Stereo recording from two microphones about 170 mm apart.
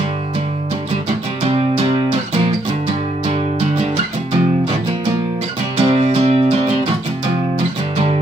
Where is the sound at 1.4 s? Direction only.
35° right (ahead or behind).